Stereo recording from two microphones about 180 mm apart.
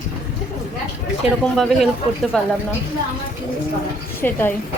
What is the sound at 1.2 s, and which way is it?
Speech, centre (ahead or behind).